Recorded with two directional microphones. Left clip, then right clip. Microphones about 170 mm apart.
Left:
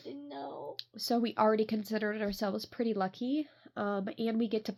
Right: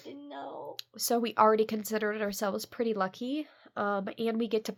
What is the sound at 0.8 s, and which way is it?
Speech, 30° right (ahead or behind).